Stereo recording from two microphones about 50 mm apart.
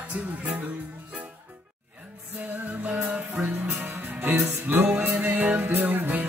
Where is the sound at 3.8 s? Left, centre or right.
Right.